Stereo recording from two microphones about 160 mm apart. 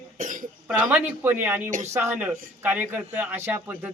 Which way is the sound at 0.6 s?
10° right (ahead or behind).